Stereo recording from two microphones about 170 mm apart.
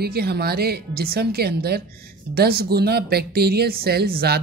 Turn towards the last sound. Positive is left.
turn(degrees=-65)  # may be behind; listen again after turning